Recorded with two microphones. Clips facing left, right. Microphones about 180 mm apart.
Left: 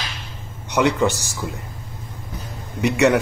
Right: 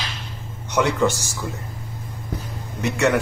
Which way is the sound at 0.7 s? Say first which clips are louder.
Left 1 dB; 15° left (ahead or behind).